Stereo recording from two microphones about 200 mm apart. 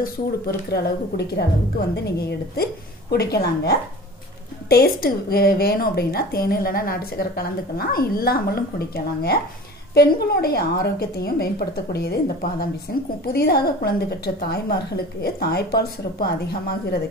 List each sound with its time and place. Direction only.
0.0 s a woman's voice: 50° left (ahead or behind)